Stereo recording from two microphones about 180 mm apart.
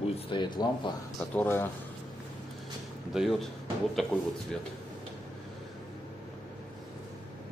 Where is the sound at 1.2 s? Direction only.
10° left (ahead or behind).